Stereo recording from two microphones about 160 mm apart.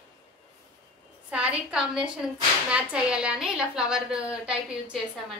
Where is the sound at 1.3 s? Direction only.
5° right (ahead or behind).